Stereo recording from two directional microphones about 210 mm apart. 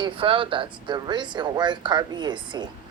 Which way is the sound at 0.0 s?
25° right (ahead or behind).